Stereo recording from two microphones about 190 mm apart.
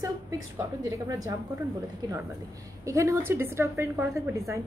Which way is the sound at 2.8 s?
15° right (ahead or behind).